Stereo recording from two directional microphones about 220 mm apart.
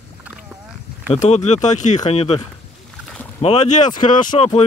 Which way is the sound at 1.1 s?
30° left (ahead or behind).